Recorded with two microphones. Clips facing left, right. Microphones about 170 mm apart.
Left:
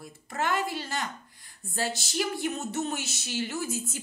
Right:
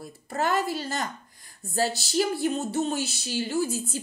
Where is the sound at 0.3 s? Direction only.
35° right (ahead or behind).